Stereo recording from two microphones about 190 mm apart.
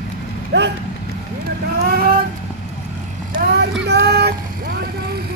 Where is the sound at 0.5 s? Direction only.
65° right (ahead or behind).